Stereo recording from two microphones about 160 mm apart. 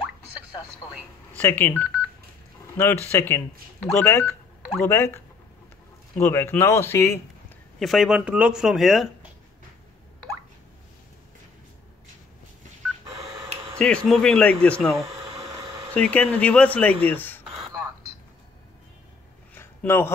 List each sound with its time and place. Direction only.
1.4 s speech: 10° left (ahead or behind)
7.8 s speech: centre (ahead or behind)
13.7 s speech: 5° left (ahead or behind)
19.5 s a sound: 15° left (ahead or behind)